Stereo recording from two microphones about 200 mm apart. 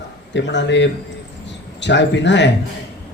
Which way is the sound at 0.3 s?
60° left (ahead or behind).